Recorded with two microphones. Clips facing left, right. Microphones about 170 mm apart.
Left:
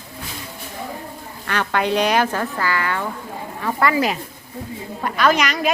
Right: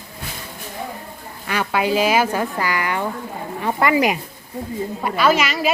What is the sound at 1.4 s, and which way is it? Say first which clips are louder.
A woman's voice: right 1 dB; 10° right (ahead or behind).